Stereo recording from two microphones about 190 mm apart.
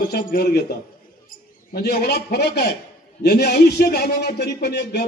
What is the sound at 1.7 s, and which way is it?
Speech, 55° left (ahead or behind).